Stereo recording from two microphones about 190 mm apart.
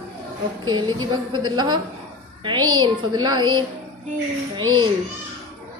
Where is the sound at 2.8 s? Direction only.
25° right (ahead or behind).